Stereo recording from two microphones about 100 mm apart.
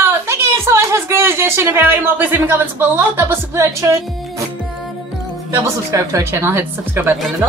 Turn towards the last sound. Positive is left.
turn(degrees=-20)  # may be behind; listen again after turning